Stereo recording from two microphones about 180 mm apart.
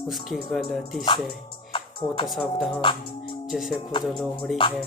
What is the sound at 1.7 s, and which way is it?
Music, 30° left (ahead or behind).